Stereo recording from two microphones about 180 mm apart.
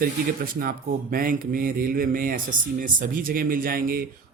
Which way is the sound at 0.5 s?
55° right (ahead or behind).